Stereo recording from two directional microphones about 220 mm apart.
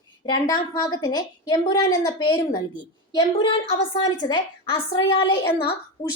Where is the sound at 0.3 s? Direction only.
20° left (ahead or behind).